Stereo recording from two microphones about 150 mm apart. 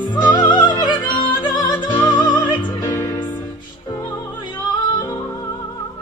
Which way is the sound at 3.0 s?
15° left (ahead or behind).